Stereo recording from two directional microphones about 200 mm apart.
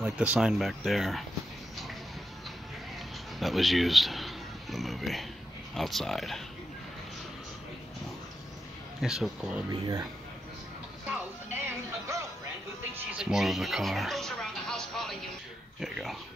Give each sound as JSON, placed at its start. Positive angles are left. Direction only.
{"t": 0.0, "sound": "speech", "side_deg": -5}
{"t": 3.3, "sound": "speech", "side_deg": 0}
{"t": 9.0, "sound": "speech", "side_deg": -5}
{"t": 9.7, "sound": "speech", "side_deg": -20}
{"t": 11.1, "sound": "music", "side_deg": -10}
{"t": 13.1, "sound": "television", "side_deg": 0}
{"t": 15.8, "sound": "speech", "side_deg": 0}